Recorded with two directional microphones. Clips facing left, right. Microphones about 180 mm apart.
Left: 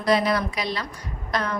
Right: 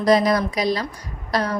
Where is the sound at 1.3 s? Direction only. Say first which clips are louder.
Right 4 dB; 35° right (ahead or behind).